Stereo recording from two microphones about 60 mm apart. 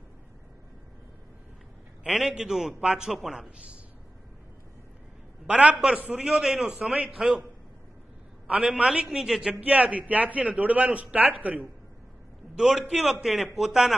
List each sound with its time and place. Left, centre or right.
2.0 s a man's voice: centre
5.5 s a man's voice: centre
8.7 s a man's voice: centre
9.5 s a man's voice: right
12.5 s a man's voice: centre